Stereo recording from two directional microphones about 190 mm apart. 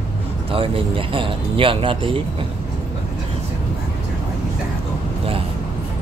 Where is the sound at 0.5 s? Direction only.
30° right (ahead or behind).